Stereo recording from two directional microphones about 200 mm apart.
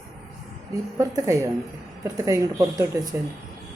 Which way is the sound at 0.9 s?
15° right (ahead or behind).